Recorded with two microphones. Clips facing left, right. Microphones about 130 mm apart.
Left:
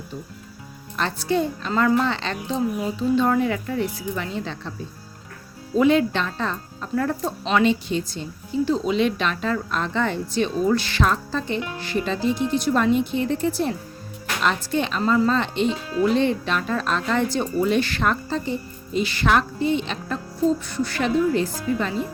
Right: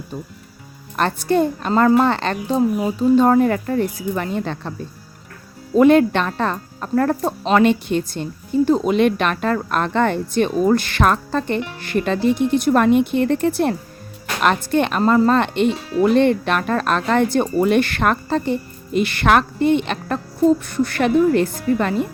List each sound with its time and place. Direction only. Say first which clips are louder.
0.9 s speech: right 5 dB; 55° right (ahead or behind)
5.7 s speech: right 6 dB; 55° right (ahead or behind)